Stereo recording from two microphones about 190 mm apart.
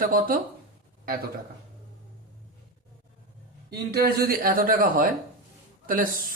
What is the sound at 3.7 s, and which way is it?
A woman's voice, 55° right (ahead or behind).